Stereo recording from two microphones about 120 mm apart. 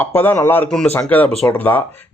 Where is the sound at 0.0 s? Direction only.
15° left (ahead or behind).